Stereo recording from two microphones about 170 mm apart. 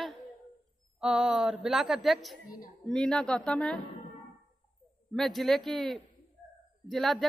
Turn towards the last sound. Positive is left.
turn(degrees=0)  # may be behind; listen again after turning